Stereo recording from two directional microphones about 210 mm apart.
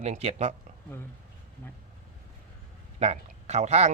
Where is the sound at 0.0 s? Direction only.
30° right (ahead or behind).